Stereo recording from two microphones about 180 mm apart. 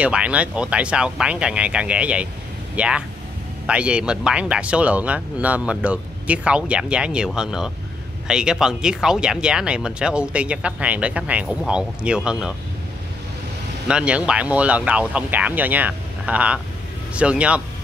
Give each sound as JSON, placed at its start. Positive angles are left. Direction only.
{"t": 0.0, "sound": "speech", "side_deg": -5}
{"t": 13.8, "sound": "speech", "side_deg": -5}